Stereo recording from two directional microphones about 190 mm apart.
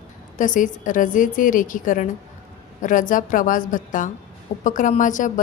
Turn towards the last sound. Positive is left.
turn(degrees=40)  # may be behind; listen again after turning